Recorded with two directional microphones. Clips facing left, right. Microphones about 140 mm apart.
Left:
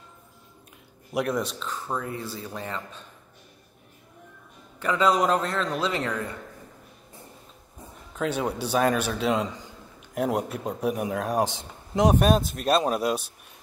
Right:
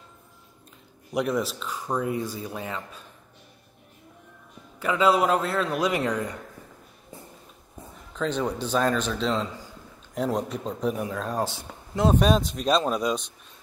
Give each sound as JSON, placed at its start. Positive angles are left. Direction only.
{"t": 1.1, "sound": "speech", "side_deg": 0}
{"t": 4.7, "sound": "speech", "side_deg": -5}
{"t": 8.2, "sound": "a man's voice", "side_deg": 10}
{"t": 12.2, "sound": "a man's voice", "side_deg": 5}